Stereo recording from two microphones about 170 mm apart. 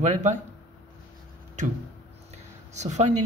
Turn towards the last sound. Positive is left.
turn(degrees=-45)  # may be behind; listen again after turning